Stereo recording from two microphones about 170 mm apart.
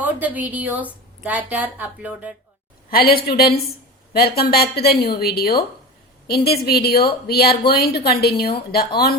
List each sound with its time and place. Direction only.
0.0 s a woman's voice: 10° right (ahead or behind)
2.9 s a woman's voice: 60° left (ahead or behind)